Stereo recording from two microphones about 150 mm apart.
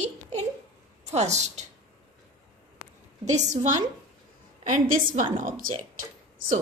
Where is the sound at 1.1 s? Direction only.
50° right (ahead or behind).